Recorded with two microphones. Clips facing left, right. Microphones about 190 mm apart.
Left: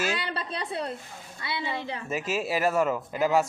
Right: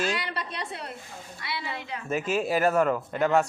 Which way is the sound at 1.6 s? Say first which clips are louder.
Left 3 dB; 30° left (ahead or behind).